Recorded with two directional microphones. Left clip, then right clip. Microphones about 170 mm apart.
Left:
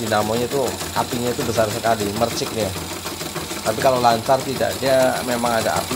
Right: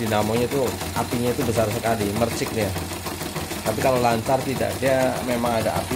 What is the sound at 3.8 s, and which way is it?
Speech, centre (ahead or behind).